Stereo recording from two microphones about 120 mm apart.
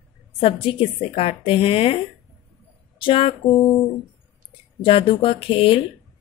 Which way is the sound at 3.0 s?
50° left (ahead or behind).